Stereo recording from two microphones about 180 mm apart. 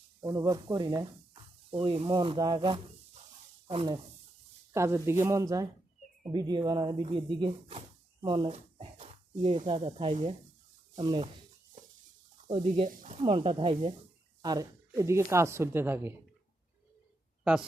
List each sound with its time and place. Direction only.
0.2 s speech: 20° right (ahead or behind)
4.7 s speech: 15° right (ahead or behind); by 9.6 s 40° right (ahead or behind)
9.6 s speech: 30° right (ahead or behind)
12.5 s speech: 30° right (ahead or behind)
12.9 s speech: 45° right (ahead or behind)
13.2 s speech: 30° right (ahead or behind)
14.4 s speech: 20° right (ahead or behind)
17.4 s speech: 5° right (ahead or behind)